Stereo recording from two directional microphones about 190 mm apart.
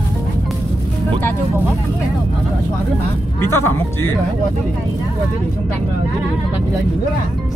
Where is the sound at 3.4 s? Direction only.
15° left (ahead or behind).